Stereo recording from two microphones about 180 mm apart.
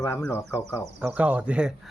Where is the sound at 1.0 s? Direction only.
5° right (ahead or behind).